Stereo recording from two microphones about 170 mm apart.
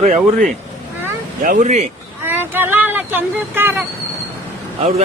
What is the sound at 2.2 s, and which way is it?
Speech, 10° right (ahead or behind).